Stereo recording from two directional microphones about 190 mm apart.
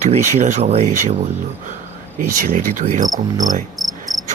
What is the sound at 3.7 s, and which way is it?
Cricket, centre (ahead or behind).